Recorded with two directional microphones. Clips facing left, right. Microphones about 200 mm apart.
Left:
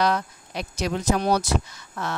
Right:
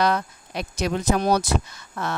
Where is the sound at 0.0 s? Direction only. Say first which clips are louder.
Right 1 dB; 55° right (ahead or behind).